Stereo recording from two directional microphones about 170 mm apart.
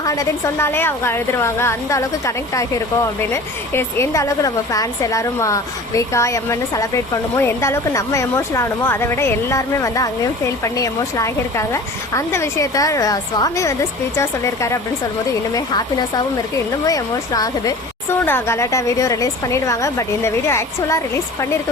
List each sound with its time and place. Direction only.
0.0 s a woman's voice: 20° left (ahead or behind)